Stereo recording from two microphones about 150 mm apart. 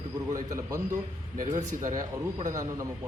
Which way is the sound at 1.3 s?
55° right (ahead or behind).